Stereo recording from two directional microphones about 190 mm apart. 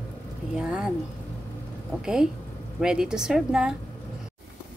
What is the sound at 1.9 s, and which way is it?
A woman's voice, 5° right (ahead or behind).